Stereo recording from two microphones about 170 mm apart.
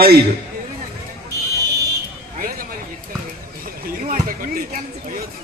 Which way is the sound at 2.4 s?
55° right (ahead or behind).